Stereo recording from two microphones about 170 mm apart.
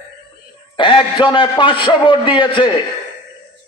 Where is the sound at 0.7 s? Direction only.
25° left (ahead or behind).